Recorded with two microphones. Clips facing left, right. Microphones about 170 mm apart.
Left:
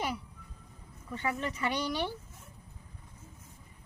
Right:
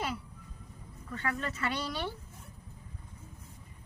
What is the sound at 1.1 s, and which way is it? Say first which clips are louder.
Speech: left 2 dB; 15° left (ahead or behind).